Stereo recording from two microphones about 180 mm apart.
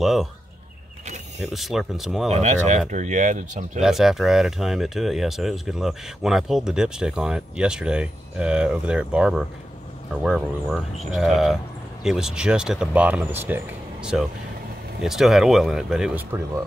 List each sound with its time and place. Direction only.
0.0 s speech: centre (ahead or behind)
1.0 s a sound: 40° right (ahead or behind)
1.5 s speech: centre (ahead or behind)
2.4 s speech: 40° right (ahead or behind)
3.8 s speech: centre (ahead or behind)